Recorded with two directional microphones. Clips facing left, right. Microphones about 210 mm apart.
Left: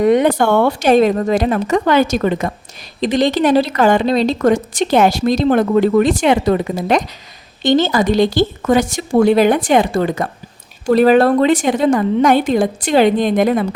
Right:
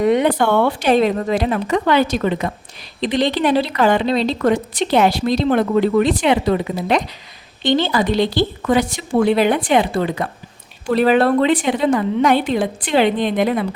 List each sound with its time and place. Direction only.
0.0 s a woman's voice: 45° left (ahead or behind)